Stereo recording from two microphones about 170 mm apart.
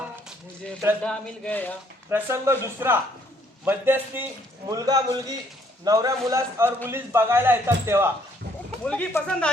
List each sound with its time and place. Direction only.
1.0 s a man's voice: 10° left (ahead or behind)
2.0 s a man's voice: 15° right (ahead or behind)
8.8 s a man's voice: 5° left (ahead or behind)